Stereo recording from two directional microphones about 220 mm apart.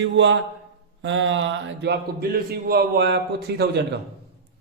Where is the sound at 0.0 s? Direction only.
55° right (ahead or behind).